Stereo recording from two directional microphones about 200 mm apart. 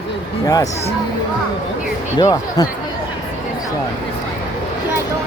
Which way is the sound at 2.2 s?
20° left (ahead or behind).